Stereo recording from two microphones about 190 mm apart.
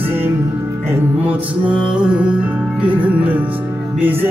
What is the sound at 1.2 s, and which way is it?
Music, 10° right (ahead or behind).